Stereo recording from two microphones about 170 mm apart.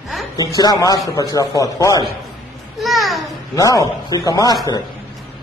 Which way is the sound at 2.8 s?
Centre (ahead or behind).